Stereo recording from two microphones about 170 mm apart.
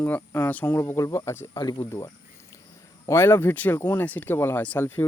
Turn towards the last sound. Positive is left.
turn(degrees=15)  # may be behind; listen again after turning